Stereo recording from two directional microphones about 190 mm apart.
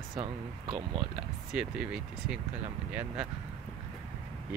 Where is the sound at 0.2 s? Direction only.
30° right (ahead or behind).